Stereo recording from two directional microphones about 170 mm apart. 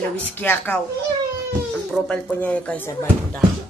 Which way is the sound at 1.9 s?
5° left (ahead or behind).